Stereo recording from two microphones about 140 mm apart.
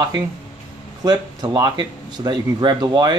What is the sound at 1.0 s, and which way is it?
Speech, 30° right (ahead or behind).